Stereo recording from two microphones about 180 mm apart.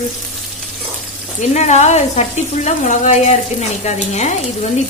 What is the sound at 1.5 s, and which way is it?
Speech, 40° left (ahead or behind).